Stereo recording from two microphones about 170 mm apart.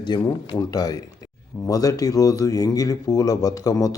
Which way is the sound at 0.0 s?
25° left (ahead or behind).